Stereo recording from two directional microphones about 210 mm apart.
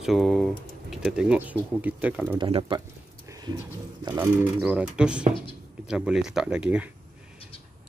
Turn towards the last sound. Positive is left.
turn(degrees=-5)  # may be behind; listen again after turning